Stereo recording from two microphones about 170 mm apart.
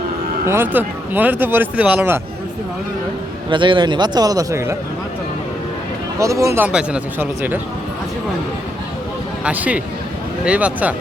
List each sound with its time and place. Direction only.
0.4 s speech: 15° right (ahead or behind)
3.5 s a man's voice: 30° right (ahead or behind)
6.1 s speech: 20° right (ahead or behind)
9.4 s speech: 10° right (ahead or behind)